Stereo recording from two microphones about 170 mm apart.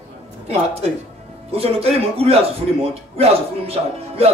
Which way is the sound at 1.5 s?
35° right (ahead or behind).